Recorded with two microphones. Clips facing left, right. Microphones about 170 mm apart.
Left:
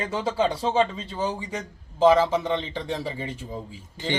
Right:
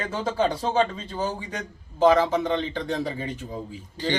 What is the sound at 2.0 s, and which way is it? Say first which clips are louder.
A man's voice: even; 5° left (ahead or behind).